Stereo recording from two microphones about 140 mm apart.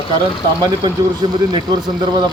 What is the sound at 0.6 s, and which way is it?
Speech, 30° right (ahead or behind).